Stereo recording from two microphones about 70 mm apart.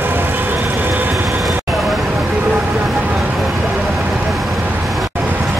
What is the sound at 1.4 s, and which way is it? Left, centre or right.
Vehicle, centre.